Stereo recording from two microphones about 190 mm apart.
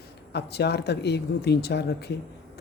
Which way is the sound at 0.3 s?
60° left (ahead or behind).